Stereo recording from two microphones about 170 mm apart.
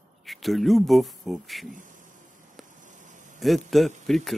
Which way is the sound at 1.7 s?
50° right (ahead or behind).